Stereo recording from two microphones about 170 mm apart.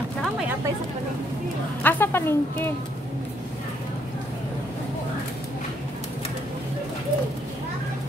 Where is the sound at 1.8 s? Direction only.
10° left (ahead or behind).